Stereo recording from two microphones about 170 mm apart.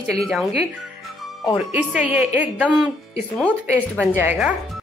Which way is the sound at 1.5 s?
5° right (ahead or behind).